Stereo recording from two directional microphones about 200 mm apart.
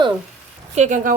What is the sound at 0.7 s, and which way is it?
Speech, 35° right (ahead or behind).